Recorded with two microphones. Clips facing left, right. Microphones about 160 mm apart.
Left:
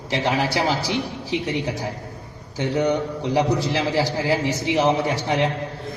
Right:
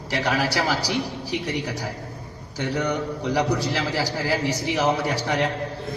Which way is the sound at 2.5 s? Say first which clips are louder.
Left 4 dB; 20° left (ahead or behind).